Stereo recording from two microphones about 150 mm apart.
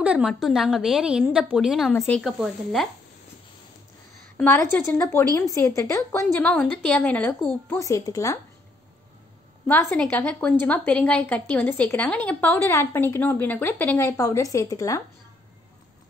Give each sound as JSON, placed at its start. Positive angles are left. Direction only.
{"t": 0.0, "sound": "a woman's voice", "side_deg": -5}
{"t": 4.6, "sound": "a woman's voice", "side_deg": 20}
{"t": 6.5, "sound": "a woman's voice", "side_deg": 5}
{"t": 9.7, "sound": "a woman's voice", "side_deg": 10}
{"t": 14.0, "sound": "a woman's voice", "side_deg": 20}